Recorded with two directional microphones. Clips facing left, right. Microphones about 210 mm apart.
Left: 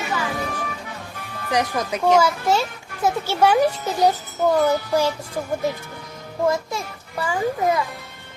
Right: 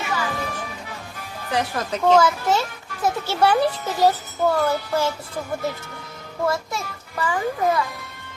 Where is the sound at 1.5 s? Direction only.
15° left (ahead or behind).